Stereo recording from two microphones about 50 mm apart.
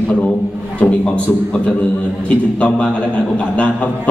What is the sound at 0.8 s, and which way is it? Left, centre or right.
Speech, left.